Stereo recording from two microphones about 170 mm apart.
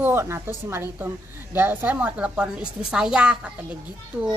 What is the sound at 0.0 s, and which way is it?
A woman's voice, 15° right (ahead or behind).